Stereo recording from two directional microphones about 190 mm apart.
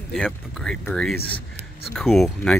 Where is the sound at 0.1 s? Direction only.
Centre (ahead or behind).